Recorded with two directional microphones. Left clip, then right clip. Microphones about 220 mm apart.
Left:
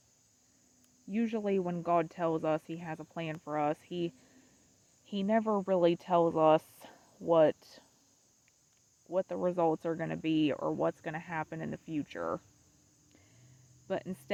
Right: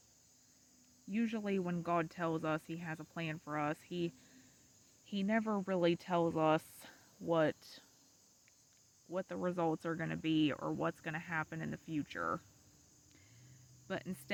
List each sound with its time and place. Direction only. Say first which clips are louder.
1.1 s speech: left 6 dB; 20° right (ahead or behind)
9.0 s speech: left 7 dB; 25° right (ahead or behind)
13.8 s speech: left 6 dB; 25° right (ahead or behind)